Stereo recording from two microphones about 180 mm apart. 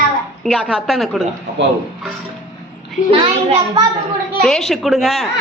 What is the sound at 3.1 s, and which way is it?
Speech, 30° right (ahead or behind).